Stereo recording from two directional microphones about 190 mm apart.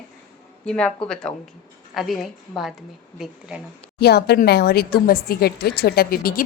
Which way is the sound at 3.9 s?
60° left (ahead or behind).